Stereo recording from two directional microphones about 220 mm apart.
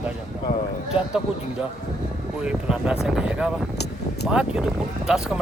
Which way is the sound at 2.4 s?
5° right (ahead or behind).